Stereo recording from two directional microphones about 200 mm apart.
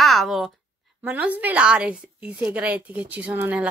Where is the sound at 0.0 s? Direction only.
Centre (ahead or behind).